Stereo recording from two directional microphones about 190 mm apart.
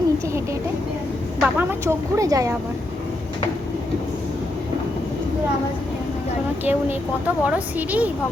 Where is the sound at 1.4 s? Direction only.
10° right (ahead or behind).